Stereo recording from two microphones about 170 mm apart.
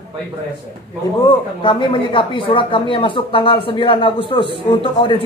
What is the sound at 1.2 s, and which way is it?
A man's voice, 30° left (ahead or behind).